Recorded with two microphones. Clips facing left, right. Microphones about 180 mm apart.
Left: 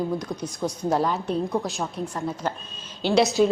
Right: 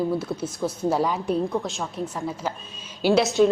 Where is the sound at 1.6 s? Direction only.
Centre (ahead or behind).